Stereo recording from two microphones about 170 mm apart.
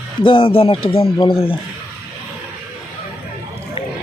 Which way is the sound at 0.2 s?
30° left (ahead or behind).